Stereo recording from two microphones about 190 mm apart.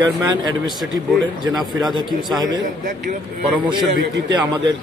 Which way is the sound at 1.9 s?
Centre (ahead or behind).